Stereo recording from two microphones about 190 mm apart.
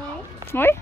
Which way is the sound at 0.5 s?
10° left (ahead or behind).